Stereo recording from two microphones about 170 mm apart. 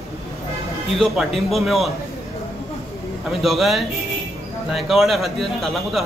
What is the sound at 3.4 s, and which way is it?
A man's voice, centre (ahead or behind).